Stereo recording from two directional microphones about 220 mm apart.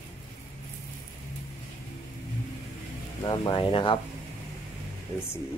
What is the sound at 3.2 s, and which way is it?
Speech, 20° left (ahead or behind).